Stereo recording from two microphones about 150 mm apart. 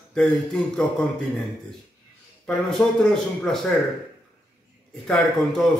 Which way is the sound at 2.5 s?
5° left (ahead or behind).